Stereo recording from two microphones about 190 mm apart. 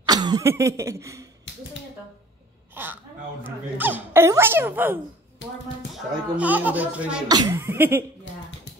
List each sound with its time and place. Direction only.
0.0 s cough: 20° right (ahead or behind)
2.7 s a woman's voice: 10° right (ahead or behind)
6.3 s speech: 10° right (ahead or behind)
7.2 s speech: 20° right (ahead or behind)